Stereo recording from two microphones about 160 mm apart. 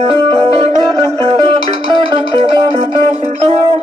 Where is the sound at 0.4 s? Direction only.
45° right (ahead or behind).